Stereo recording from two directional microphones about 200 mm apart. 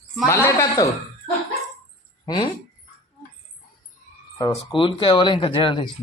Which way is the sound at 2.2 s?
20° left (ahead or behind).